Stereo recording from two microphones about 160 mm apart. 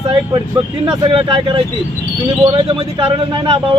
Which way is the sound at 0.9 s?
35° right (ahead or behind).